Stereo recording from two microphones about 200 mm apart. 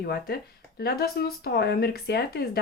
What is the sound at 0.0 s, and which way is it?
Speech, 50° left (ahead or behind).